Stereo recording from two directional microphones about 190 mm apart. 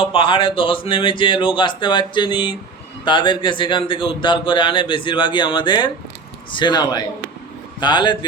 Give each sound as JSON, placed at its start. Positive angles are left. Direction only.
{"t": 0.0, "sound": "speech", "side_deg": 25}